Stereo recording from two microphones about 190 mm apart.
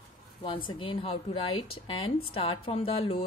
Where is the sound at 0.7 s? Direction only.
25° left (ahead or behind).